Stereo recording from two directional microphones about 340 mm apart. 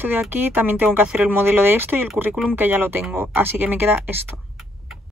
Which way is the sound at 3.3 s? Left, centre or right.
Left.